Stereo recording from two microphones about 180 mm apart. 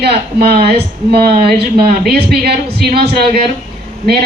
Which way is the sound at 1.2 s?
60° right (ahead or behind).